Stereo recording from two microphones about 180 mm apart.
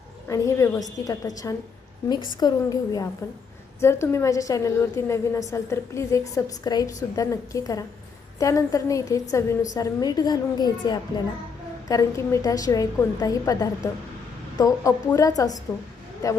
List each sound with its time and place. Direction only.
0.3 s a woman's voice: 15° left (ahead or behind)